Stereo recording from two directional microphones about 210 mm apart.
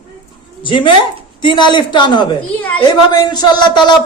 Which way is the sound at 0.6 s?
25° left (ahead or behind).